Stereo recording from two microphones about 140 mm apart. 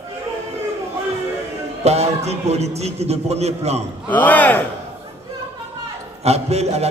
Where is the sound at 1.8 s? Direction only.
50° right (ahead or behind).